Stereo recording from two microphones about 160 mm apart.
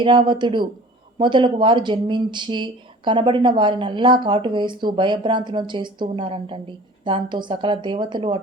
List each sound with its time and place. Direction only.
0.0 s speech: 30° right (ahead or behind)